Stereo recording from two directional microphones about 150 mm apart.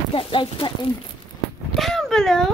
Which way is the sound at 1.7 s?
Centre (ahead or behind).